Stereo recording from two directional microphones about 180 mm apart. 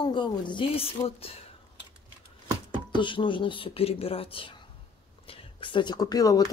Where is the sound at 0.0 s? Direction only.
25° left (ahead or behind).